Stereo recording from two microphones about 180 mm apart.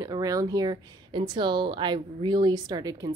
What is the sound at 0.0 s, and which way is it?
Speech, 20° right (ahead or behind).